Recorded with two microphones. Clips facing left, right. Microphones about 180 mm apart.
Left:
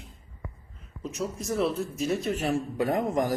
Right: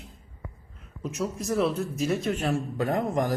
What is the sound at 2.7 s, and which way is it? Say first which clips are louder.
Speech: even; 15° left (ahead or behind).